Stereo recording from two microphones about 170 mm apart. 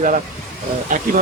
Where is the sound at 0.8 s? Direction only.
50° right (ahead or behind).